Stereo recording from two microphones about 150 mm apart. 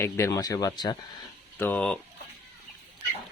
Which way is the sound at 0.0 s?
20° left (ahead or behind).